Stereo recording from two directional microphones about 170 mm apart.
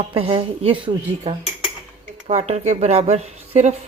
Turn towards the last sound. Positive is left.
turn(degrees=-40)  # may be behind; listen again after turning